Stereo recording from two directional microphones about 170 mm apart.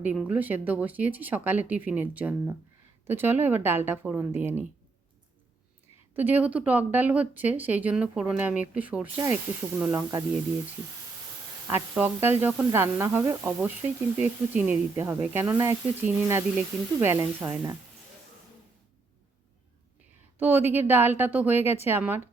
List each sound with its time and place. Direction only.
0.0 s speech: 10° right (ahead or behind)
6.1 s speech: 10° right (ahead or behind)
9.1 s speech: 20° right (ahead or behind)
11.7 s speech: 10° right (ahead or behind)
20.7 s speech: 10° right (ahead or behind)